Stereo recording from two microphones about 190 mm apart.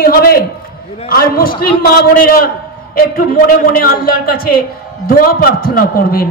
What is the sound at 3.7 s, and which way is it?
A man's voice, 50° left (ahead or behind).